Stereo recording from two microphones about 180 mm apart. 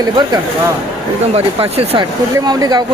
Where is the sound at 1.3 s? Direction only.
30° right (ahead or behind).